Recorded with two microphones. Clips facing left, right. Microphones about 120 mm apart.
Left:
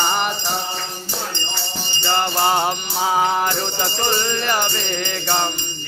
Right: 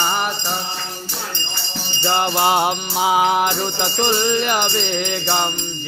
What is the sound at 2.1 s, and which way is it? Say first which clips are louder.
Music: right 1 dB; 15° right (ahead or behind).